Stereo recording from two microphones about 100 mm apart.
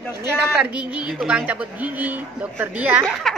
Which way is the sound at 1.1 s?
10° right (ahead or behind).